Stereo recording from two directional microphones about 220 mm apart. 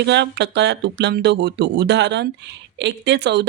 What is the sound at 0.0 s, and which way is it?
Speech, 50° right (ahead or behind).